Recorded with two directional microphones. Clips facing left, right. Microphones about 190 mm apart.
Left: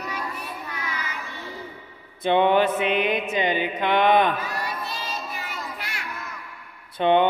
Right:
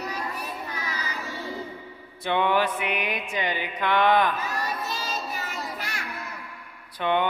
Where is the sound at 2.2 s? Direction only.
20° left (ahead or behind).